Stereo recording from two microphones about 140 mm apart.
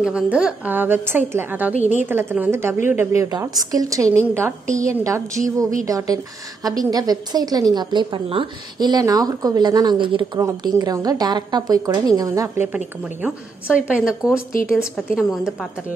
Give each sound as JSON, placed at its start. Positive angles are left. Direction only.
{"t": 0.0, "sound": "a woman's voice", "side_deg": -10}
{"t": 3.2, "sound": "a woman's voice", "side_deg": -30}
{"t": 12.7, "sound": "a woman's voice", "side_deg": -10}